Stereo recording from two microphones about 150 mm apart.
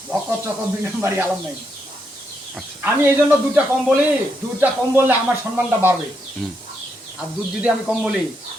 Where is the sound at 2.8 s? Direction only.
10° right (ahead or behind).